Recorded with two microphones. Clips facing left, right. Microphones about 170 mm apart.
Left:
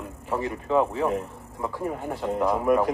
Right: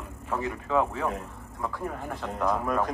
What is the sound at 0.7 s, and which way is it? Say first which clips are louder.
A man's voice: left 4 dB; 25° left (ahead or behind).